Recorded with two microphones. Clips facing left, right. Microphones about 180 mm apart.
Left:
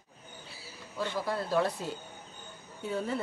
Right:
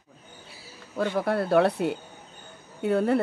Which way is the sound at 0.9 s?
55° right (ahead or behind).